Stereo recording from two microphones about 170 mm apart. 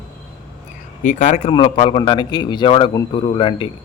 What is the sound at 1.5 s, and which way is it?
A man's voice, 30° left (ahead or behind).